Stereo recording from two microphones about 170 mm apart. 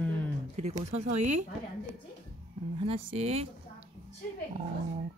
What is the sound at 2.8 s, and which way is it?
Speech, 35° right (ahead or behind).